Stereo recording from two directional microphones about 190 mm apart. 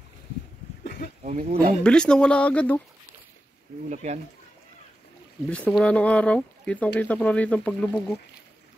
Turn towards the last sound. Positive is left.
turn(degrees=5)  # may be behind; listen again after turning